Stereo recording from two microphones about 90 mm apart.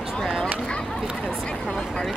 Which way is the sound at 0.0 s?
Centre (ahead or behind).